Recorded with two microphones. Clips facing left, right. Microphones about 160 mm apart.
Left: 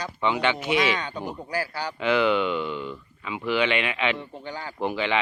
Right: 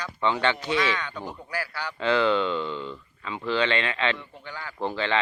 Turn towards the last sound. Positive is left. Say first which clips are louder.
# left 1 dB
turn(degrees=15)  # may be behind; listen again after turning